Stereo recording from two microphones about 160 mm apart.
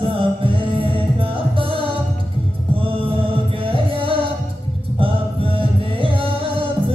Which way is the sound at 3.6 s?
35° right (ahead or behind).